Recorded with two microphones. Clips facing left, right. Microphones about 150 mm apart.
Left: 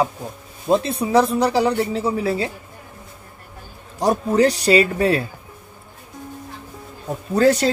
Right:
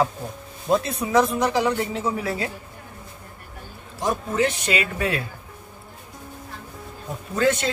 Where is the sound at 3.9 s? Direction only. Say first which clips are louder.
Left 6 dB; 35° left (ahead or behind).